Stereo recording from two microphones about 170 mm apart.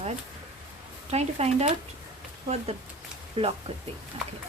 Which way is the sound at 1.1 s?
40° right (ahead or behind).